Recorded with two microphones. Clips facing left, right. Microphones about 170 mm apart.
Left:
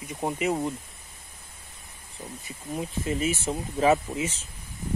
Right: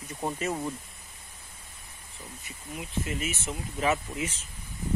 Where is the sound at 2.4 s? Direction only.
35° left (ahead or behind).